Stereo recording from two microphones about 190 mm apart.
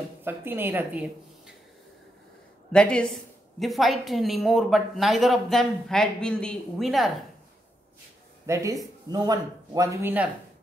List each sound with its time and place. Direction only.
0.2 s speech: 10° right (ahead or behind)
2.7 s a woman's voice: 5° left (ahead or behind)
8.5 s speech: 15° right (ahead or behind)